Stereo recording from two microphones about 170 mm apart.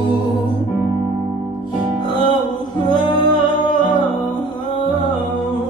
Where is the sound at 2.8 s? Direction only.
25° left (ahead or behind).